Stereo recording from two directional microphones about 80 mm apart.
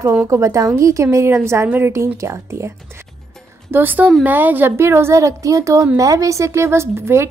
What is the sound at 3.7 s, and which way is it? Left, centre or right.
A woman's voice, right.